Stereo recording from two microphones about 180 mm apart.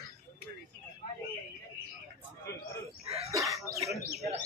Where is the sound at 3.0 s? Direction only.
35° right (ahead or behind).